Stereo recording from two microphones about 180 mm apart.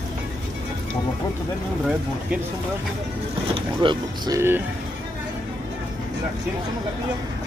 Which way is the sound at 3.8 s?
25° right (ahead or behind).